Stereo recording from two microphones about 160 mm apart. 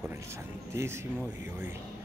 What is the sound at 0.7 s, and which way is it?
Speech, 15° right (ahead or behind).